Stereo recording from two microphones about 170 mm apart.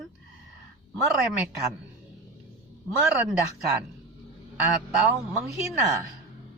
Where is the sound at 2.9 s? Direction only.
5° right (ahead or behind).